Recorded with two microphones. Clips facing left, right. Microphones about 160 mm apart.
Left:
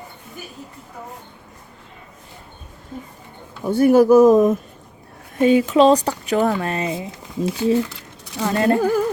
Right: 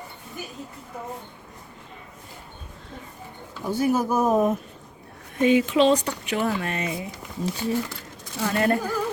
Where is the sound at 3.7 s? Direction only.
60° left (ahead or behind); by 4.4 s 90° left.